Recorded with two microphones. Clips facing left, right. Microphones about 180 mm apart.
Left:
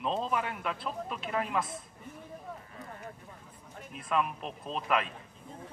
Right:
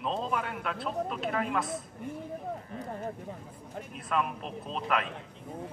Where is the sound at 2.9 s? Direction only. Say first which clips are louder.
Right 10 dB; 40° right (ahead or behind).